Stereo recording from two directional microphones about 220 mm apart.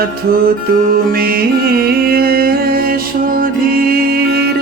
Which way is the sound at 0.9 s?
45° right (ahead or behind).